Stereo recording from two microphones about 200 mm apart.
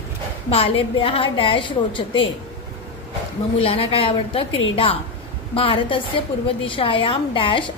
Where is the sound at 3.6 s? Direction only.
30° left (ahead or behind).